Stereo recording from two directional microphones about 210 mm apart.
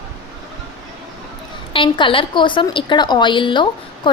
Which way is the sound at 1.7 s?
25° left (ahead or behind).